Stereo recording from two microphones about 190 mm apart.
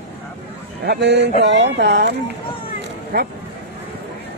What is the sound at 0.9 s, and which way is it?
Speech, 60° right (ahead or behind).